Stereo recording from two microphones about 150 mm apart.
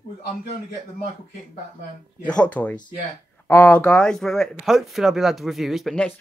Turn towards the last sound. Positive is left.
turn(degrees=5)  # may be behind; listen again after turning